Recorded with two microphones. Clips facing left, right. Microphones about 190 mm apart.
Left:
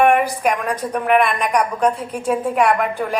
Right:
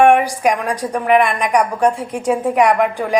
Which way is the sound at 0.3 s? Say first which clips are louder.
Right 2 dB; 10° right (ahead or behind).